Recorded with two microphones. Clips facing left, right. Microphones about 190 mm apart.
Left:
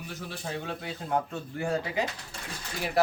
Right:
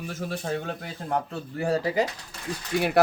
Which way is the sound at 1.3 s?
35° right (ahead or behind).